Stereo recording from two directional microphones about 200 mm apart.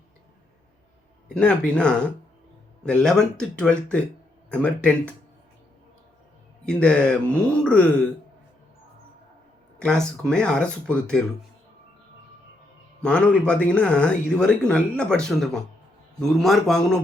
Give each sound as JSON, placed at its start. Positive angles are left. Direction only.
{"t": 1.3, "sound": "speech", "side_deg": 5}
{"t": 6.7, "sound": "speech", "side_deg": 5}
{"t": 9.7, "sound": "speech", "side_deg": 5}
{"t": 13.0, "sound": "speech", "side_deg": 5}